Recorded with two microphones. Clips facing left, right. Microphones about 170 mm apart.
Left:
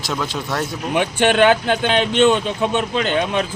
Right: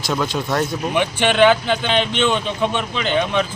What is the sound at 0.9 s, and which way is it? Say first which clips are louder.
Speech: left 1 dB; 45° left (ahead or behind).